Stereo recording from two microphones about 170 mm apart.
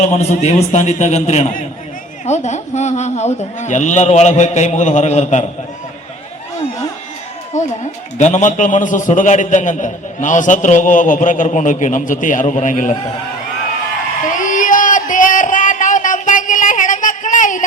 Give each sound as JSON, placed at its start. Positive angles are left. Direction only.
{"t": 0.0, "sound": "a man's voice", "side_deg": 40}
{"t": 7.5, "sound": "a man's voice", "side_deg": 45}
{"t": 14.3, "sound": "a sound", "side_deg": 50}